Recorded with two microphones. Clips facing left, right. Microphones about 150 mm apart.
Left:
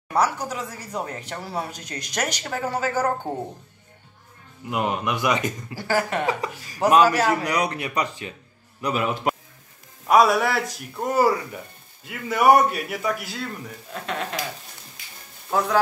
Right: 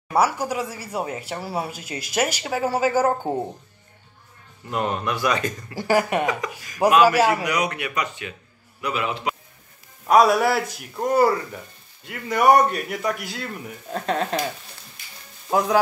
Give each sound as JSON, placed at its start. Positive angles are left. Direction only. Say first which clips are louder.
{"t": 0.1, "sound": "speech", "louder": "right 2 dB", "side_deg": -10}
{"t": 4.6, "sound": "speech", "louder": "even", "side_deg": 15}
{"t": 5.8, "sound": "speech", "louder": "right 4 dB", "side_deg": -15}
{"t": 6.2, "sound": "speech", "louder": "even", "side_deg": 30}
{"t": 7.0, "sound": "speech", "louder": "right 2 dB", "side_deg": -10}
{"t": 7.4, "sound": "a man's voice", "louder": "even", "side_deg": 35}
{"t": 10.0, "sound": "a man's voice", "louder": "right 1 dB", "side_deg": 0}
{"t": 13.9, "sound": "speech", "louder": "right 6 dB", "side_deg": -35}